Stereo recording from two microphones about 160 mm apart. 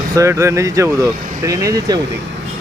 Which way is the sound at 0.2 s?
20° right (ahead or behind).